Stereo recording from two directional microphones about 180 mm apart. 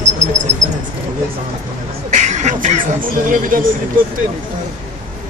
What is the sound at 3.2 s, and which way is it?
Speech, 50° right (ahead or behind).